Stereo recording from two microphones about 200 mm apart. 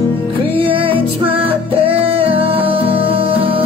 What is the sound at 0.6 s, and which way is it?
Music, 25° right (ahead or behind).